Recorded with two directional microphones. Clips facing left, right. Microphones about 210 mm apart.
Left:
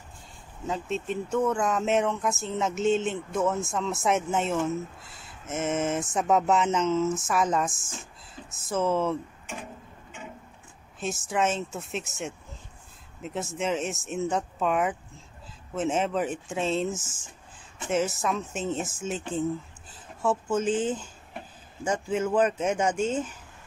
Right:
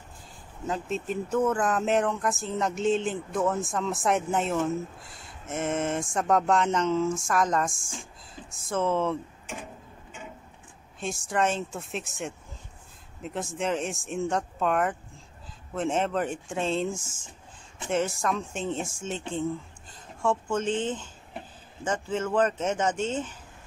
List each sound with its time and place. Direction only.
0.7 s speech: centre (ahead or behind)
11.0 s speech: centre (ahead or behind)